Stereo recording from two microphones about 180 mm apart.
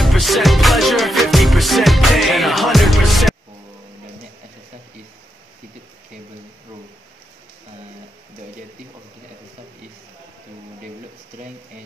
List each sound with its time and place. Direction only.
0.0 s music: centre (ahead or behind)